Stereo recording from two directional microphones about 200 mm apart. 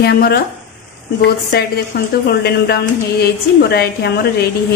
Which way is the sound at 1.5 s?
55° left (ahead or behind).